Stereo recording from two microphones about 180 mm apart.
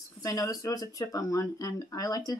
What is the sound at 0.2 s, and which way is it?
A woman's voice, 20° left (ahead or behind).